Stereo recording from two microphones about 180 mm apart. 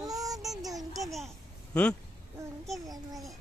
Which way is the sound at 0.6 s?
Centre (ahead or behind).